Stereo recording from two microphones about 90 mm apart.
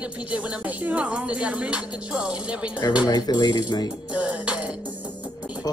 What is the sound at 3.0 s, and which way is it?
Speech, 50° left (ahead or behind).